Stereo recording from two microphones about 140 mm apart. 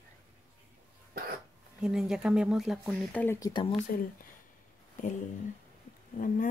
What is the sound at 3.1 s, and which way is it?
Speech, 15° left (ahead or behind).